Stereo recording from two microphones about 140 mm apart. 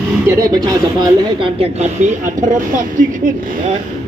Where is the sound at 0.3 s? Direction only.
25° right (ahead or behind); by 3.6 s 75° right (ahead or behind).